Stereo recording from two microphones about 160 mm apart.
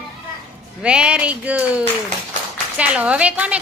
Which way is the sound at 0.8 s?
5° right (ahead or behind).